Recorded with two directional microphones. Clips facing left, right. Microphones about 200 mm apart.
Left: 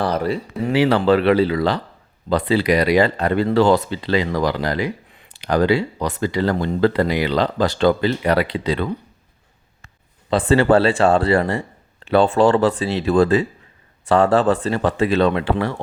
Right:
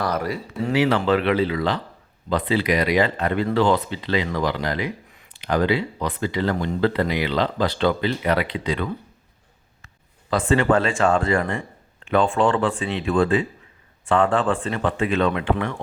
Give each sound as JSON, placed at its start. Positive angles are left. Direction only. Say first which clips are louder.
{"t": 0.0, "sound": "speech", "louder": "left 4 dB", "side_deg": 30}